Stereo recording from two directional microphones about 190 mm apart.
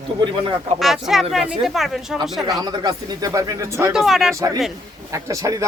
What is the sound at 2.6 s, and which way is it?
Speech, 20° right (ahead or behind).